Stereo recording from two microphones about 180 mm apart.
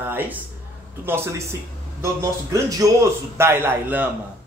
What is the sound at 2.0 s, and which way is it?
Speech, 15° right (ahead or behind).